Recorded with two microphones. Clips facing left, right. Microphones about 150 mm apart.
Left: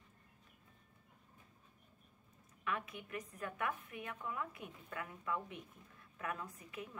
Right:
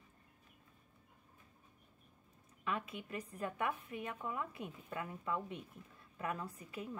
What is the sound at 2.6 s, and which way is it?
A woman's voice, 25° right (ahead or behind).